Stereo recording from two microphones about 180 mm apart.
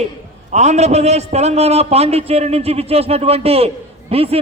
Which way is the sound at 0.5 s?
40° right (ahead or behind).